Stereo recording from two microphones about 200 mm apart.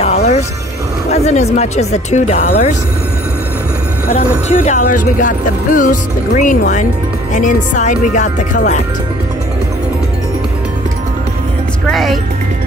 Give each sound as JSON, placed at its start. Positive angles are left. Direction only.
{"t": 0.0, "sound": "music", "side_deg": 30}
{"t": 1.1, "sound": "speech", "side_deg": 35}
{"t": 4.5, "sound": "speech", "side_deg": 40}
{"t": 11.9, "sound": "speech", "side_deg": 0}